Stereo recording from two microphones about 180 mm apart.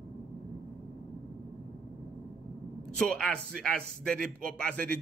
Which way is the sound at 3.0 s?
5° left (ahead or behind).